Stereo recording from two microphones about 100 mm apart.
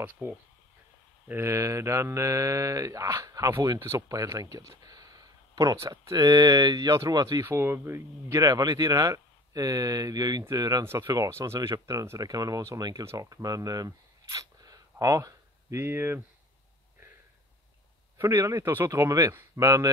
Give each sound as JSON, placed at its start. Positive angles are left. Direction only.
{"t": 0.0, "sound": "speech", "side_deg": -20}
{"t": 1.2, "sound": "mantra", "side_deg": -25}
{"t": 7.4, "sound": "mantra", "side_deg": -25}
{"t": 10.9, "sound": "speech", "side_deg": -30}
{"t": 18.1, "sound": "speech", "side_deg": -25}